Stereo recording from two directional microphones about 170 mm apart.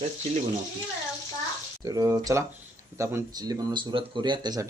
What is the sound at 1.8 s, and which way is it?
A man's voice, 20° right (ahead or behind).